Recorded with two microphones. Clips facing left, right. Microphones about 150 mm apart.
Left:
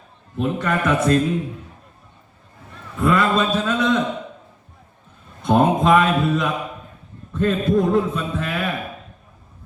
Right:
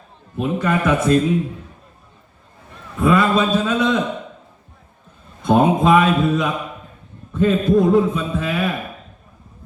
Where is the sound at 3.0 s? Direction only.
5° right (ahead or behind).